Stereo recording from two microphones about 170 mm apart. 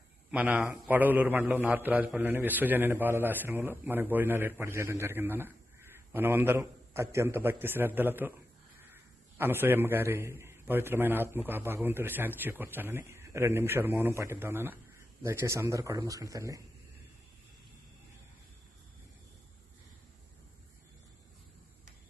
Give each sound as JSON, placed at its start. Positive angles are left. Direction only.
{"t": 0.3, "sound": "a man's voice", "side_deg": -10}
{"t": 9.4, "sound": "a man's voice", "side_deg": -10}